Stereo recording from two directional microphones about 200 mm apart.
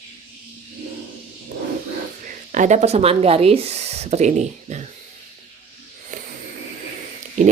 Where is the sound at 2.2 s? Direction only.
40° right (ahead or behind).